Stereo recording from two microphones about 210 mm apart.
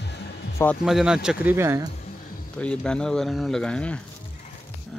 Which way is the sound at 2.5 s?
5° left (ahead or behind).